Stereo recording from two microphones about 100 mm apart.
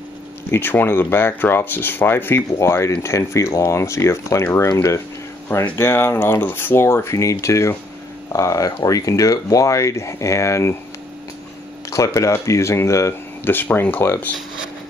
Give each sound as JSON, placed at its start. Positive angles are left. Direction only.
{"t": 0.5, "sound": "speech", "side_deg": 20}
{"t": 11.9, "sound": "speech", "side_deg": 30}